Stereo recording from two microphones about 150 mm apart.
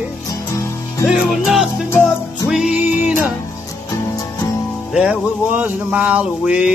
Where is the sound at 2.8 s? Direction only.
55° left (ahead or behind).